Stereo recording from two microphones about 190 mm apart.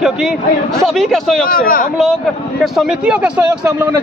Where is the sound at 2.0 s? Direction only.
Centre (ahead or behind).